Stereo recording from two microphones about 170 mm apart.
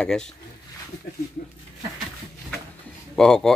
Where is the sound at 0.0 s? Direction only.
5° left (ahead or behind).